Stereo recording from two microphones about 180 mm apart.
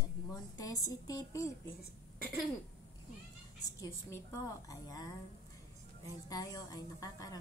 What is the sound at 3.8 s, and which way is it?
A woman's voice, 15° left (ahead or behind).